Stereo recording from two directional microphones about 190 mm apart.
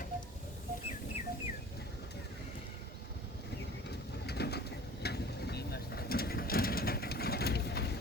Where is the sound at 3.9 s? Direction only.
60° left (ahead or behind).